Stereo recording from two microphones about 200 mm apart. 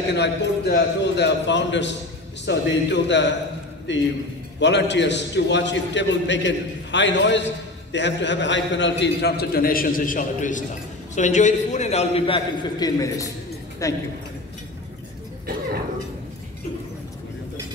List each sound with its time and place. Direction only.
0.1 s a man's voice: 55° left (ahead or behind); by 14.0 s 15° left (ahead or behind)